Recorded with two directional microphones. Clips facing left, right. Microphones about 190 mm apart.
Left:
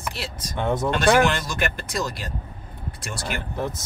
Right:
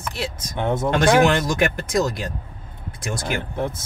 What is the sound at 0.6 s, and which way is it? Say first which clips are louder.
Speech: right 3 dB; 20° right (ahead or behind).